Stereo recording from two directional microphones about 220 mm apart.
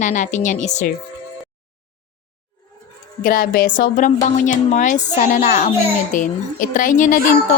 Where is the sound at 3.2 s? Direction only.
40° left (ahead or behind).